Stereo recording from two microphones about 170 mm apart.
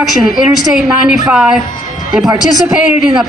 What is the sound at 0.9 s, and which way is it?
Speech, 5° right (ahead or behind).